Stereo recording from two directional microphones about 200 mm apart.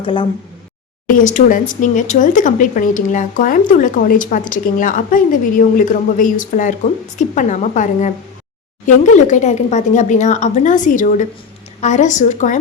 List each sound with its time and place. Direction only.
0.0 s speech: 25° left (ahead or behind)
1.0 s speech: 40° left (ahead or behind)